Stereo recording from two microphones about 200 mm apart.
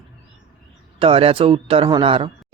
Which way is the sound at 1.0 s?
25° right (ahead or behind).